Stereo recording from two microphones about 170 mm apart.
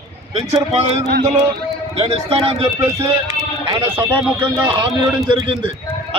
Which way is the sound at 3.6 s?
25° right (ahead or behind).